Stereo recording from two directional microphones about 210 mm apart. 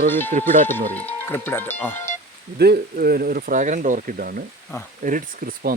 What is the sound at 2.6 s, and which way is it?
Speech, 50° right (ahead or behind).